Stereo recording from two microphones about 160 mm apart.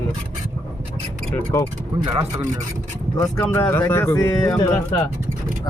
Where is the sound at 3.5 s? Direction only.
15° left (ahead or behind).